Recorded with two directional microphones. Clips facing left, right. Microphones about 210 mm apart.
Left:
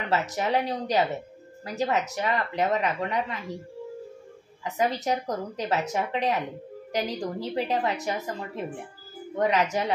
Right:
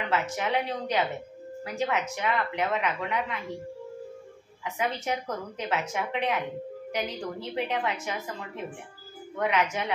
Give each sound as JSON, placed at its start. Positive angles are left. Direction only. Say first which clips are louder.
{"t": 0.1, "sound": "a woman's voice", "louder": "left 3 dB", "side_deg": 35}
{"t": 4.6, "sound": "a woman's voice", "louder": "left 4 dB", "side_deg": 35}